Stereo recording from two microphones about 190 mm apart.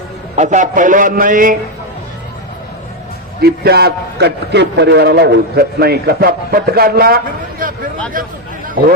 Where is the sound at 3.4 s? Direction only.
55° right (ahead or behind).